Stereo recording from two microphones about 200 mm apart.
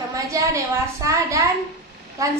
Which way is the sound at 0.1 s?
15° right (ahead or behind).